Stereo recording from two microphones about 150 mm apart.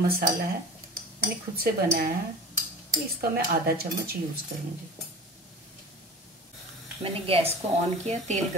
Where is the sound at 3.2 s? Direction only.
90° right.